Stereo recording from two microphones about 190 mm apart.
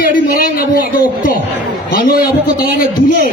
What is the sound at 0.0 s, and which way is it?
Speech, 50° left (ahead or behind).